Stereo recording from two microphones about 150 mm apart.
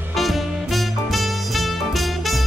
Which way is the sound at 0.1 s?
Centre (ahead or behind).